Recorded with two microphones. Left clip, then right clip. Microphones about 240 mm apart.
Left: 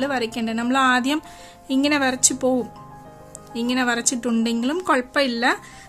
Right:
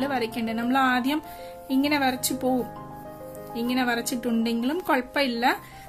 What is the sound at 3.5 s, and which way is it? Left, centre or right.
Speech, centre.